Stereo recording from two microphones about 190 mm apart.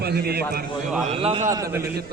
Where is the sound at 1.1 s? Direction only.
30° right (ahead or behind).